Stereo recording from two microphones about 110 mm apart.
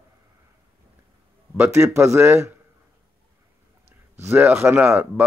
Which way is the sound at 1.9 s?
25° right (ahead or behind).